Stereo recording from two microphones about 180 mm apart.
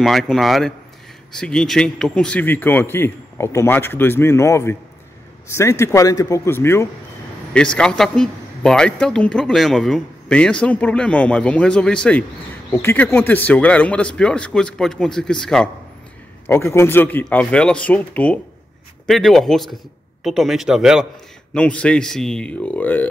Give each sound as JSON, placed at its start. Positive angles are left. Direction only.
{"t": 0.0, "sound": "a man's voice", "side_deg": 0}
{"t": 16.4, "sound": "a man's voice", "side_deg": 15}